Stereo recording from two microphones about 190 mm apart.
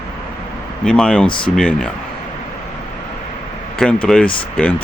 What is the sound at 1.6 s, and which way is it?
Speech, 5° left (ahead or behind).